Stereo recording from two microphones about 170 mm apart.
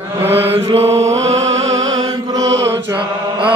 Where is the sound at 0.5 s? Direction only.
35° right (ahead or behind).